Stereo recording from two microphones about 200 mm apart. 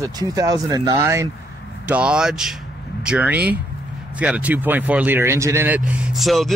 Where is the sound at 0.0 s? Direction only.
20° right (ahead or behind).